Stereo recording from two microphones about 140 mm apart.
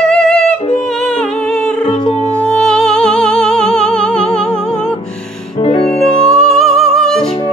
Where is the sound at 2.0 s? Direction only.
45° left (ahead or behind).